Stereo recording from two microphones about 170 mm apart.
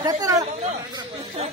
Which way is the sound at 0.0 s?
20° right (ahead or behind).